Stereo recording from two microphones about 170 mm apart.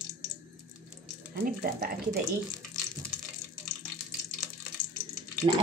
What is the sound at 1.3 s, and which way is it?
Speech, 60° right (ahead or behind).